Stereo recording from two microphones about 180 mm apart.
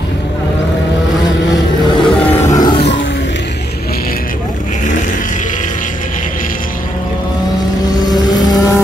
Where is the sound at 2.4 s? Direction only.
20° left (ahead or behind).